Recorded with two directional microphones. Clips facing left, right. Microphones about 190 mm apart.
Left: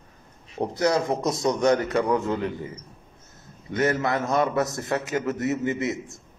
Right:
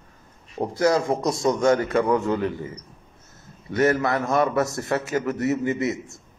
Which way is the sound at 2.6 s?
20° right (ahead or behind).